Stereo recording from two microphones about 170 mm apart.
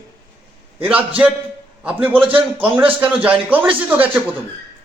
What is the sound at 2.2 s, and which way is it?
Speech, 30° right (ahead or behind).